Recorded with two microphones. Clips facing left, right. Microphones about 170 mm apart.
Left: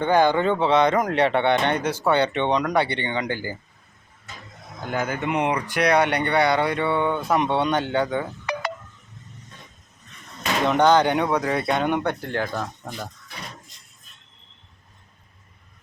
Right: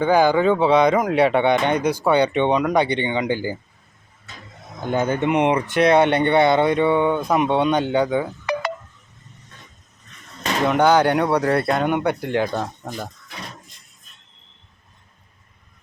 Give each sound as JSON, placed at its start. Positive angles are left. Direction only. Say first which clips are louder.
{"t": 0.0, "sound": "speech", "louder": "right 3 dB", "side_deg": -10}
{"t": 4.9, "sound": "speech", "louder": "right 6 dB", "side_deg": -25}
{"t": 10.7, "sound": "speech", "louder": "right 1 dB", "side_deg": -10}